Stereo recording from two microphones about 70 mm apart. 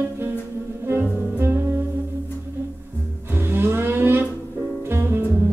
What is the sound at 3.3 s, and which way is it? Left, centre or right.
Music, right.